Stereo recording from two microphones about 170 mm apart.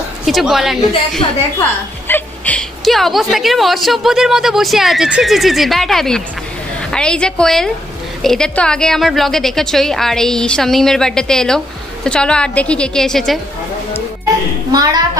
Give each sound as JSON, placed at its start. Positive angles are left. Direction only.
{"t": 0.2, "sound": "a woman's voice", "side_deg": 0}
{"t": 2.0, "sound": "a woman's voice", "side_deg": 10}
{"t": 14.7, "sound": "a woman's voice", "side_deg": -25}